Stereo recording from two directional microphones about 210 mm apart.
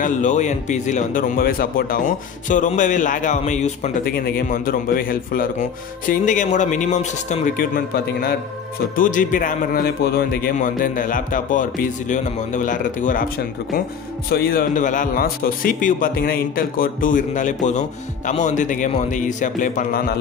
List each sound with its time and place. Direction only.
0.0 s speech: 35° left (ahead or behind)